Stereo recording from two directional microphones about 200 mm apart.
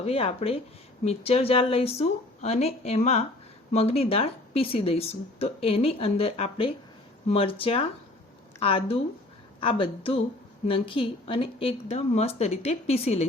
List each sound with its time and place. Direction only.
0.0 s a woman's voice: 30° left (ahead or behind)